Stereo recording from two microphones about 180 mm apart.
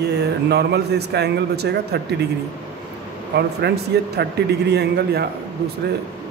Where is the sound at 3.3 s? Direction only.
65° right (ahead or behind).